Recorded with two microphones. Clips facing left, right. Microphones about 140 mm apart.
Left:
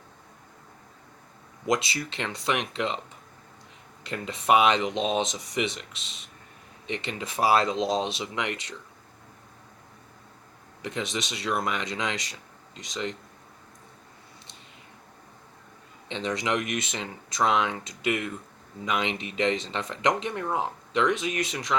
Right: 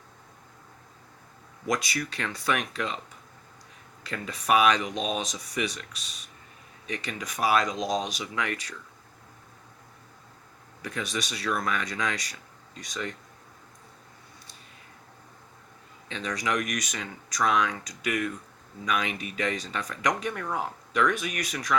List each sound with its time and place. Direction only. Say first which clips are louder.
1.6 s speech: left 2 dB; 25° left (ahead or behind)
4.0 s speech: left 4 dB; 25° left (ahead or behind)
10.8 s speech: left 1 dB; 25° left (ahead or behind)
16.0 s speech: left 2 dB; 25° left (ahead or behind)